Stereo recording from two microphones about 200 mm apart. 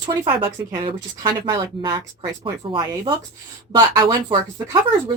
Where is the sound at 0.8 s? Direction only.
25° right (ahead or behind).